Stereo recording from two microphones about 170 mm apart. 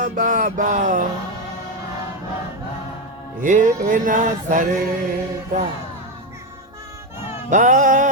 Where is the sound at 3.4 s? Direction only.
50° right (ahead or behind).